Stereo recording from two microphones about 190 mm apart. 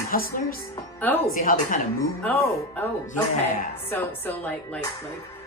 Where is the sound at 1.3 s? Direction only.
45° left (ahead or behind).